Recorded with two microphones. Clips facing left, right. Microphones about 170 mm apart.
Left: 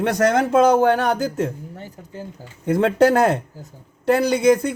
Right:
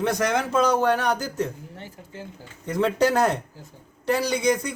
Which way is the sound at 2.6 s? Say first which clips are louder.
Left 6 dB; 55° left (ahead or behind).